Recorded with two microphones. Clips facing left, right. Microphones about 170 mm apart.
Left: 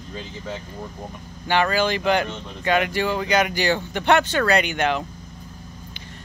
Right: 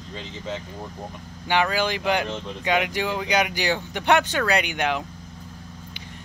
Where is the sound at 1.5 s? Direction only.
10° right (ahead or behind).